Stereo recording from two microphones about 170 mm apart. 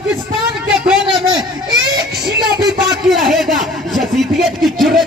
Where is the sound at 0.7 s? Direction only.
5° right (ahead or behind).